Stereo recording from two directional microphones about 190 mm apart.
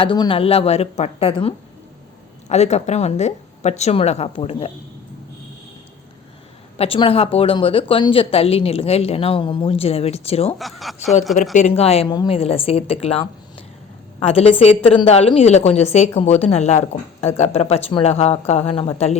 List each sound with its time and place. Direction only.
0.0 s a woman's voice: 25° left (ahead or behind)
6.7 s a woman's voice: 30° left (ahead or behind)
10.6 s speech: centre (ahead or behind)
11.8 s a woman's voice: 30° left (ahead or behind)